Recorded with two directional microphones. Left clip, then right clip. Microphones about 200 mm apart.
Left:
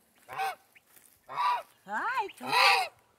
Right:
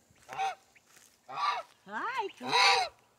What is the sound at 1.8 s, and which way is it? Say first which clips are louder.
Speech: left 3 dB; 50° left (ahead or behind).